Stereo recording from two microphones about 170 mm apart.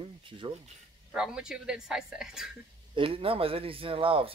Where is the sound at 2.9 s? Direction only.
30° right (ahead or behind).